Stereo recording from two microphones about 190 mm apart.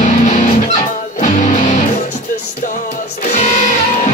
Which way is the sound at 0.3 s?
40° left (ahead or behind).